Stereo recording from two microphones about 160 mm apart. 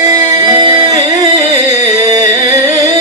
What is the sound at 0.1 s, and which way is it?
Music, 25° right (ahead or behind).